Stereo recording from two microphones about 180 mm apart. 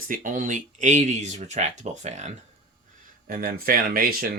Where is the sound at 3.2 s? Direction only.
50° right (ahead or behind).